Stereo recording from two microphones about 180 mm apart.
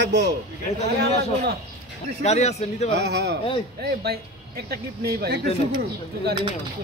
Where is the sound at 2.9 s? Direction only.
70° right (ahead or behind).